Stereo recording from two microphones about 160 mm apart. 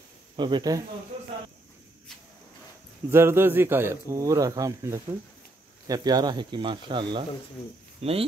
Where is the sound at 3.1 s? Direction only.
15° right (ahead or behind).